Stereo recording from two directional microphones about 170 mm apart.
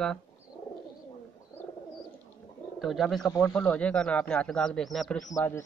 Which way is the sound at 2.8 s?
Centre (ahead or behind).